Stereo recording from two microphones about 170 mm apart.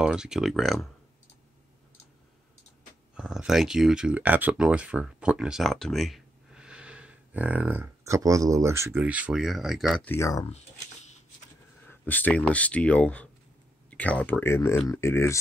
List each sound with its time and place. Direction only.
0.0 s speech: 5° right (ahead or behind)
3.2 s speech: 5° right (ahead or behind)
10.0 s speech: 15° left (ahead or behind)
11.9 s speech: 10° left (ahead or behind)